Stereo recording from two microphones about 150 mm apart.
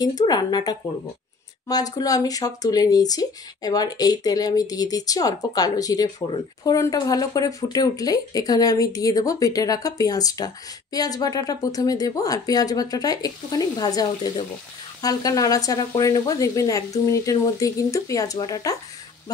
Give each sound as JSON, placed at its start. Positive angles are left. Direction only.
{"t": 0.0, "sound": "speech", "side_deg": 25}